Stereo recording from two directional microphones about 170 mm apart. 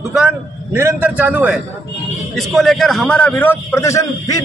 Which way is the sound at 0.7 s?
15° right (ahead or behind).